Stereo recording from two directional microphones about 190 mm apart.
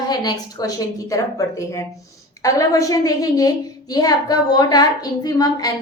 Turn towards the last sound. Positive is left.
turn(degrees=20)  # may be behind; listen again after turning